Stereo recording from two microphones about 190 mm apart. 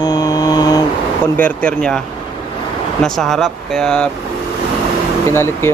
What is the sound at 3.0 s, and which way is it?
Speech, centre (ahead or behind).